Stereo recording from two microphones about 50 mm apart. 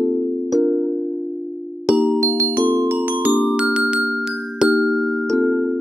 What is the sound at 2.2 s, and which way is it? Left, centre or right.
Music, right.